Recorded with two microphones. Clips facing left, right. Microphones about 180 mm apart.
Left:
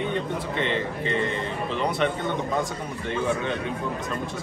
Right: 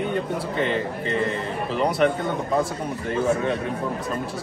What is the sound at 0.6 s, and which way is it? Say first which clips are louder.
Speech: right 2 dB; 40° right (ahead or behind).